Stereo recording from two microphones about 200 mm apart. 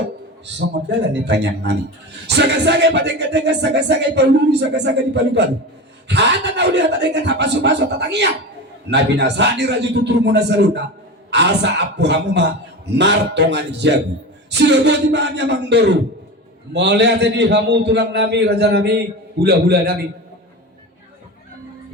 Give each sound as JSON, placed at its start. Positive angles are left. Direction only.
{"t": 0.4, "sound": "a man's voice", "side_deg": -60}